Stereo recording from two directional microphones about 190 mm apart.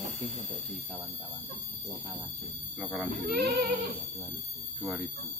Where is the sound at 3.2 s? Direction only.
55° right (ahead or behind).